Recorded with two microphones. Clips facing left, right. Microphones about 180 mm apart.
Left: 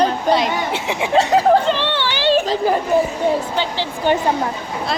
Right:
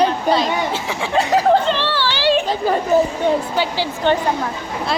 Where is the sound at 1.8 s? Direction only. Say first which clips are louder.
Even; 20° left (ahead or behind).